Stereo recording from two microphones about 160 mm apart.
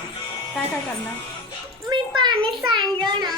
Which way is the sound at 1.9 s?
30° right (ahead or behind).